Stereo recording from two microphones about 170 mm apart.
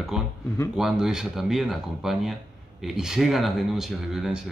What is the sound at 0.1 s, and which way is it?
Speech, 5° right (ahead or behind).